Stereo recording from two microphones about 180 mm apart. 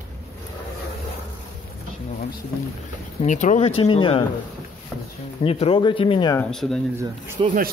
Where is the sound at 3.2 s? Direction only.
45° left (ahead or behind).